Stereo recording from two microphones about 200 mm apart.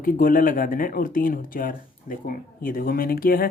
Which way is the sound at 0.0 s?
45° left (ahead or behind).